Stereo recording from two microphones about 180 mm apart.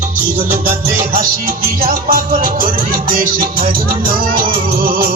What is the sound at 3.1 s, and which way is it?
Music, 55° right (ahead or behind).